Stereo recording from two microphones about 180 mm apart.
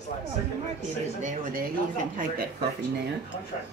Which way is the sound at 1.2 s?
50° right (ahead or behind).